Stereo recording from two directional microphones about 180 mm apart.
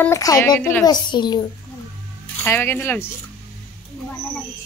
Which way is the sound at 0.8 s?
25° left (ahead or behind).